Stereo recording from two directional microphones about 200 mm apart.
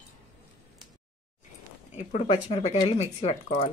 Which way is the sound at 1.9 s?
35° left (ahead or behind).